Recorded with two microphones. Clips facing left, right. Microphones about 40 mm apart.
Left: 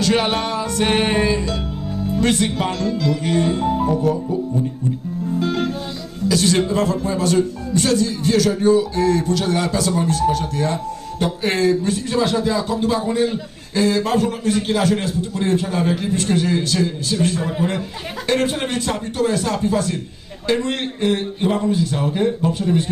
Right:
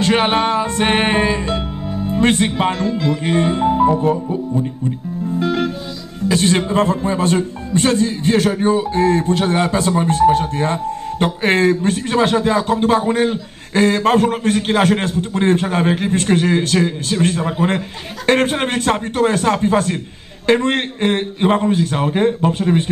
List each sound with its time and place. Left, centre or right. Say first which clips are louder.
0.0 s music: right 3 dB; right
6.2 s a man's voice: right 1 dB; right